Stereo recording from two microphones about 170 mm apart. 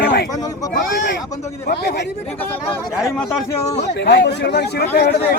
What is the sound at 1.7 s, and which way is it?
Speech, 90° left.